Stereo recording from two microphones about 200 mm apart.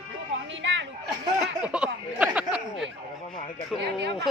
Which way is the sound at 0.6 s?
65° right (ahead or behind).